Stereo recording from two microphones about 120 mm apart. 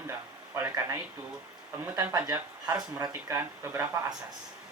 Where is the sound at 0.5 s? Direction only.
25° right (ahead or behind).